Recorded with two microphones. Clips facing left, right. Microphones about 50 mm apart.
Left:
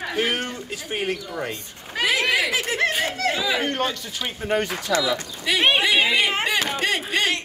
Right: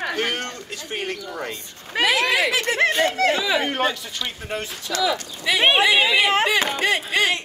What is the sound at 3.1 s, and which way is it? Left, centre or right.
Speech, right.